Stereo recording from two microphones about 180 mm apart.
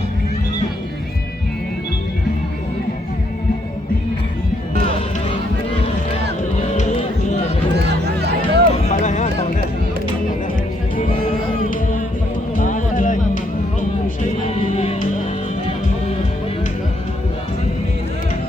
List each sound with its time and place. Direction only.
6.7 s music: 40° left (ahead or behind)
7.8 s music: 65° right (ahead or behind)
8.9 s music: 40° left (ahead or behind)
12.5 s music: 50° left (ahead or behind)
14.2 s music: 35° left (ahead or behind)